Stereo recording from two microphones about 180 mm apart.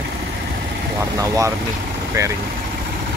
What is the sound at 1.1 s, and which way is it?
Speech, 20° right (ahead or behind).